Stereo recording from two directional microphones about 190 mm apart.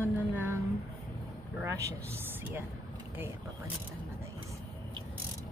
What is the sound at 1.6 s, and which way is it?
Speech, 15° right (ahead or behind).